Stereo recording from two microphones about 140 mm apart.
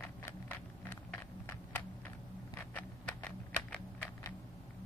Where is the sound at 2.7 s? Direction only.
10° left (ahead or behind).